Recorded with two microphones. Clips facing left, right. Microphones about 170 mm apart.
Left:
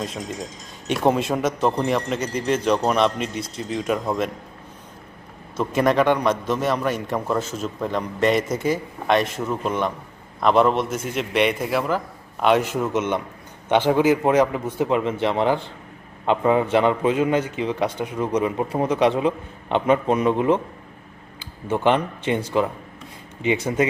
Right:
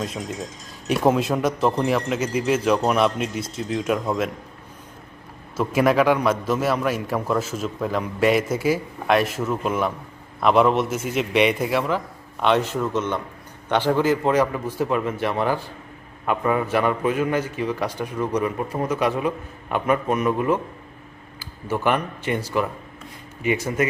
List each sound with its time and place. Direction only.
0.0 s a man's voice: centre (ahead or behind)
5.5 s a man's voice: 5° right (ahead or behind)
12.7 s a man's voice: 20° left (ahead or behind)